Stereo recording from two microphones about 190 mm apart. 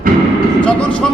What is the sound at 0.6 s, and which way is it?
Speech, 5° left (ahead or behind).